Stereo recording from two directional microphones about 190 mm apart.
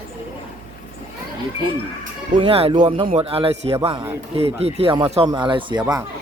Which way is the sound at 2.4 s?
30° right (ahead or behind).